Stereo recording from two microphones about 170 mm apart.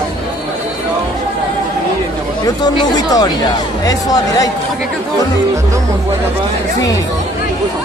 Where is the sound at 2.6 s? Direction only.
25° left (ahead or behind).